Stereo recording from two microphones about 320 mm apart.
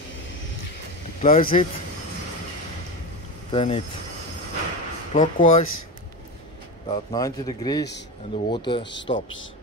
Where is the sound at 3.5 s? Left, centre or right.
Centre.